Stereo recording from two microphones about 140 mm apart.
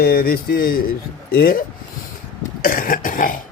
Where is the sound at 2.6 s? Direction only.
85° left.